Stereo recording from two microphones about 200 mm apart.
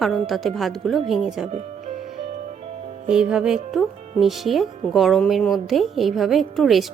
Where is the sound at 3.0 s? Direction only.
5° right (ahead or behind).